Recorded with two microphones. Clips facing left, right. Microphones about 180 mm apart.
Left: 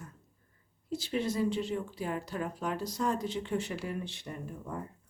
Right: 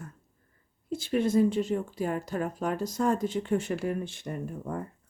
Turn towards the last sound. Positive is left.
turn(degrees=-50)  # may be behind; listen again after turning